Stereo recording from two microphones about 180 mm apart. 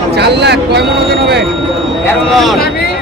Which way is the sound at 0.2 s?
70° right (ahead or behind).